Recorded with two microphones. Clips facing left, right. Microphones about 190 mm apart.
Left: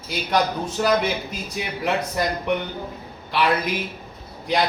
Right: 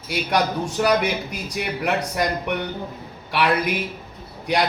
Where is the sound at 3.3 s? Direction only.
10° right (ahead or behind).